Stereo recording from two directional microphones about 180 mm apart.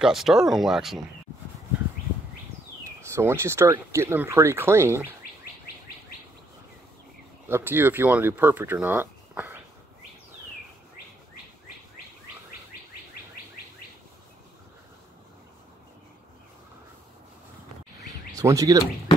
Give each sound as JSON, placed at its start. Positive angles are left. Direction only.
{"t": 0.0, "sound": "speech", "side_deg": 0}
{"t": 3.2, "sound": "speech", "side_deg": -15}
{"t": 7.4, "sound": "speech", "side_deg": -10}
{"t": 18.3, "sound": "speech", "side_deg": -20}